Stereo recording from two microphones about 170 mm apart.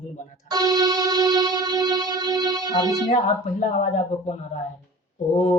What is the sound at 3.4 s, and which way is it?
Speech, 45° left (ahead or behind).